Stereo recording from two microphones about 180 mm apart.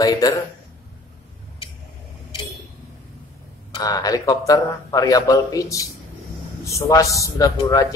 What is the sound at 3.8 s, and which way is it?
A man's voice, 20° left (ahead or behind).